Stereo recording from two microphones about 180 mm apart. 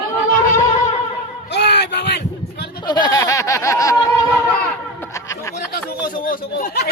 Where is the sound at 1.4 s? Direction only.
70° left (ahead or behind).